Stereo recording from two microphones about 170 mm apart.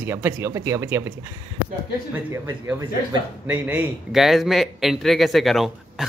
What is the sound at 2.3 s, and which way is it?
A man's voice, 15° right (ahead or behind).